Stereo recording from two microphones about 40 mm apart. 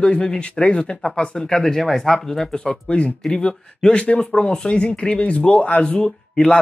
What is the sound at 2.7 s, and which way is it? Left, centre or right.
Speech, left.